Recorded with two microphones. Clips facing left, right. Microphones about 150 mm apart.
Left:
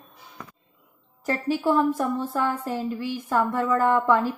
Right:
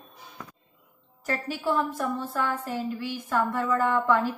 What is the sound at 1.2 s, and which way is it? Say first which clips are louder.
A woman's voice: left 5 dB; 30° left (ahead or behind).